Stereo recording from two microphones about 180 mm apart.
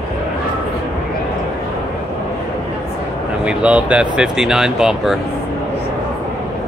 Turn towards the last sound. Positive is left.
turn(degrees=-5)  # may be behind; listen again after turning